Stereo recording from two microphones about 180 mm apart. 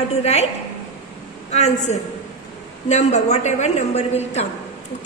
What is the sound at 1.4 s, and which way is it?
A woman's voice, 40° left (ahead or behind).